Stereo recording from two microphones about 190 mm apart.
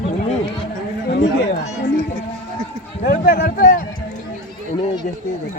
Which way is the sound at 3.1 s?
45° left (ahead or behind).